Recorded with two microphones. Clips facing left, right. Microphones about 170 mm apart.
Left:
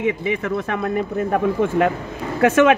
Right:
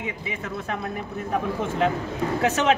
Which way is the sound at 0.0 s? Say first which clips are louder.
Left 11 dB; 70° left (ahead or behind).